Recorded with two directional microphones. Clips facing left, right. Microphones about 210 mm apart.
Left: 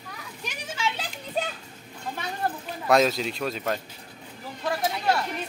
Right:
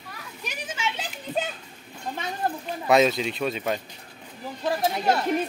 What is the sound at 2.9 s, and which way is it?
Speech, centre (ahead or behind).